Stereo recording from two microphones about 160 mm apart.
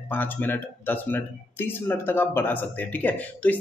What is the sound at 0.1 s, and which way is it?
Speech, 10° left (ahead or behind).